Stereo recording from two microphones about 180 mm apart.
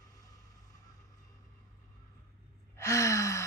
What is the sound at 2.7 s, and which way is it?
Gasp, 15° left (ahead or behind).